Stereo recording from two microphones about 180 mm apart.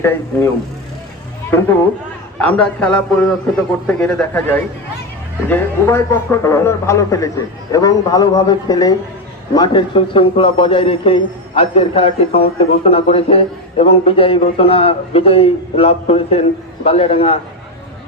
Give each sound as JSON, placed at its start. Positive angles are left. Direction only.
{"t": 0.0, "sound": "a man's voice", "side_deg": 10}
{"t": 2.4, "sound": "a man's voice", "side_deg": 5}